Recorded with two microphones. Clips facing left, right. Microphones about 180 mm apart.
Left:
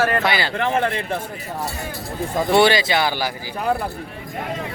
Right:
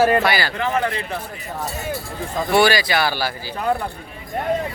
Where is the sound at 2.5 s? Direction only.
25° left (ahead or behind).